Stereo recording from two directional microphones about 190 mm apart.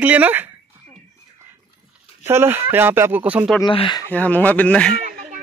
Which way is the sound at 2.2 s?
10° right (ahead or behind).